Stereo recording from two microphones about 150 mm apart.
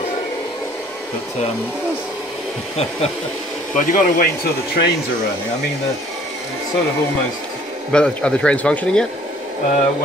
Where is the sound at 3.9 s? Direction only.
65° left (ahead or behind).